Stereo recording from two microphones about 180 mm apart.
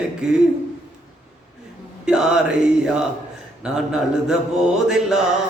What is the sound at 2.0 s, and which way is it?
Mantra, 5° right (ahead or behind).